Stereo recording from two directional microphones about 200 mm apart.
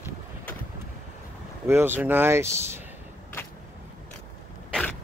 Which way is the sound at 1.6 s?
10° right (ahead or behind).